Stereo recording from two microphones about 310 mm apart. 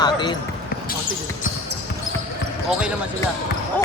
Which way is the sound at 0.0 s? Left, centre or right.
Centre.